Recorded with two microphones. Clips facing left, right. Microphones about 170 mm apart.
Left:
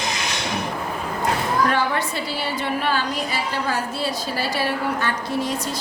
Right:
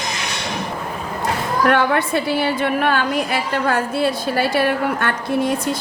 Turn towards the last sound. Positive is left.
turn(degrees=-55)  # may be behind; listen again after turning